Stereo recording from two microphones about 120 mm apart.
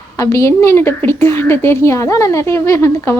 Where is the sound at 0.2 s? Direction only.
25° left (ahead or behind).